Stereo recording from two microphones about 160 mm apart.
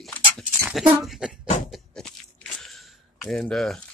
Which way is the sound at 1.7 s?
5° left (ahead or behind).